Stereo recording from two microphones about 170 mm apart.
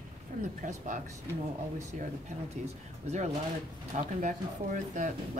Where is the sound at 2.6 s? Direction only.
40° right (ahead or behind).